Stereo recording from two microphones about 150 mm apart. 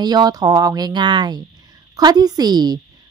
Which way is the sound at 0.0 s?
25° right (ahead or behind).